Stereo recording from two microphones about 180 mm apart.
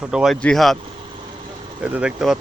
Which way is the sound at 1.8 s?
10° right (ahead or behind).